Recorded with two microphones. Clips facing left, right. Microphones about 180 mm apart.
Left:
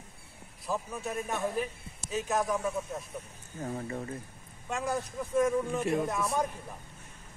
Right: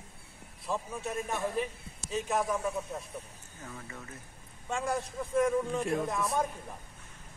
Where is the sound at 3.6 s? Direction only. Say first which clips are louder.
Left 10 dB; 35° left (ahead or behind).